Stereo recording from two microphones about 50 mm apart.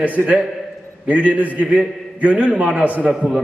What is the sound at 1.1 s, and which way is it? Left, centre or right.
A man's voice, right.